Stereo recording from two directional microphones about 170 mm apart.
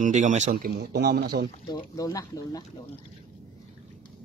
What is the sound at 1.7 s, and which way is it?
Speech, 20° left (ahead or behind).